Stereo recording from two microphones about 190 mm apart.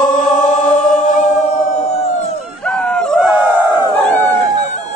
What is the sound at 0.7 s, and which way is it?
Music, 40° left (ahead or behind).